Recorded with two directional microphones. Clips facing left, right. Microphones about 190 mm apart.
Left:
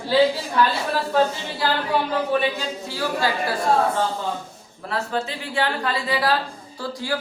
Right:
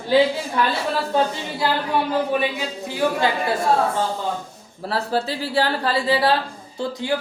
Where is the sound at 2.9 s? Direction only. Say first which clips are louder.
Right 4 dB; 20° right (ahead or behind).